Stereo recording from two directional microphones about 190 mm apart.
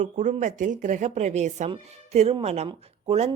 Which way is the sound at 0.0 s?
40° right (ahead or behind).